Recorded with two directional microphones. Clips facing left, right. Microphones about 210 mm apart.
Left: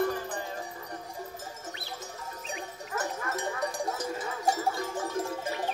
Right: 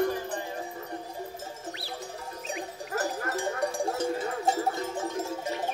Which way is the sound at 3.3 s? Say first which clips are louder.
Right 3 dB; 30° right (ahead or behind).